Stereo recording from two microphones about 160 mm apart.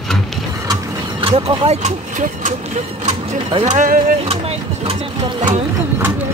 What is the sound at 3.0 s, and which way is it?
Speech, 45° right (ahead or behind).